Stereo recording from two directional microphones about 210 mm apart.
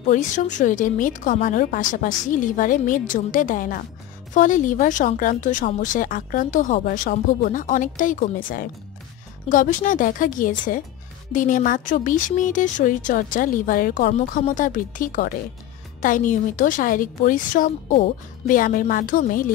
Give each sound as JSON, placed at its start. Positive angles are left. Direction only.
{"t": 0.0, "sound": "speech", "side_deg": 35}